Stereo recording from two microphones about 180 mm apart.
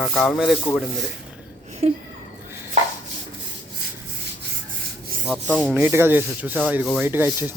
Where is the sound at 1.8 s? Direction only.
35° right (ahead or behind).